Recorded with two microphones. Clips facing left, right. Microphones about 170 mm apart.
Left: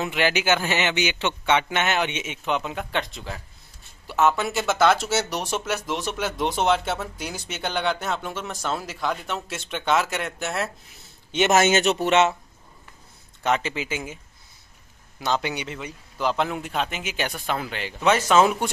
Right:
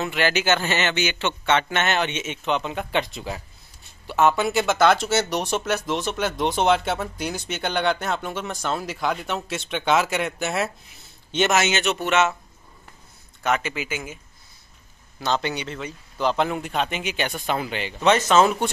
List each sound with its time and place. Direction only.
0.0 s speech: 15° left (ahead or behind); by 10.7 s 5° right (ahead or behind)
11.5 s speech: 45° left (ahead or behind)
13.4 s speech: 25° left (ahead or behind)
15.1 s speech: 10° left (ahead or behind)